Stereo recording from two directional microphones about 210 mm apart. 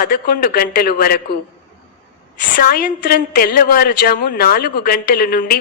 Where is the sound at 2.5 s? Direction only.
45° left (ahead or behind).